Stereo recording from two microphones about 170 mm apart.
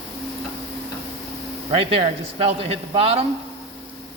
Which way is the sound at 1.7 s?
35° right (ahead or behind).